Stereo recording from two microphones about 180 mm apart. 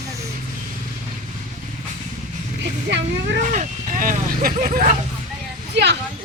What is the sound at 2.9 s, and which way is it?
Speech, 75° right (ahead or behind).